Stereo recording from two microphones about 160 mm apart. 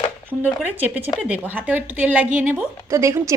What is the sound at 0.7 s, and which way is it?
Speech, 10° right (ahead or behind).